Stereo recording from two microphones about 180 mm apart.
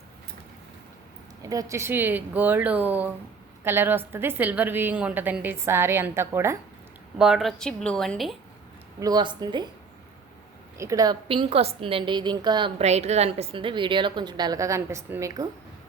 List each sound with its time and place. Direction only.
1.4 s a woman's voice: 20° right (ahead or behind)
7.2 s a woman's voice: centre (ahead or behind)
9.0 s a woman's voice: 20° right (ahead or behind)
10.8 s a woman's voice: 20° right (ahead or behind)
12.8 s a woman's voice: 35° right (ahead or behind); by 15.4 s 20° right (ahead or behind)